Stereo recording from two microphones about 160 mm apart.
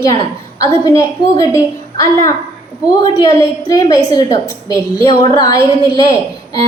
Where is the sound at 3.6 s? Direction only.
20° left (ahead or behind).